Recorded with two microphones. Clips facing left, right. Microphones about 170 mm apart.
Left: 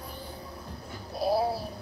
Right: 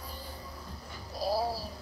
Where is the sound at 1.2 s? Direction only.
60° left (ahead or behind).